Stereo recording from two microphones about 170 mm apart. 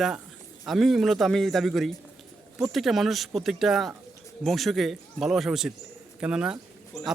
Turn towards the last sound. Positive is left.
turn(degrees=-5)  # may be behind; listen again after turning